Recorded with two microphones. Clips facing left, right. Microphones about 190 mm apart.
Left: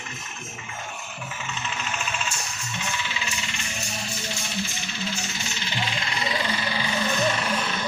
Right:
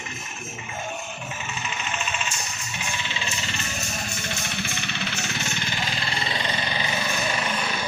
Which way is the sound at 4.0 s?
55° right (ahead or behind).